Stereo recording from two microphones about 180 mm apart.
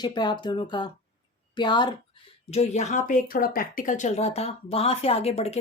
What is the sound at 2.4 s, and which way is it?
Speech, 35° left (ahead or behind).